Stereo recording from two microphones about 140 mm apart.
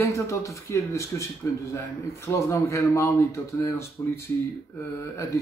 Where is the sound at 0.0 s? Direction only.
20° left (ahead or behind).